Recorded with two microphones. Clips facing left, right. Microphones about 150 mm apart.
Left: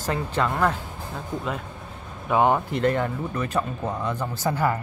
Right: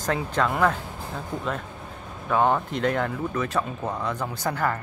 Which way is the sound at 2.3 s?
15° left (ahead or behind).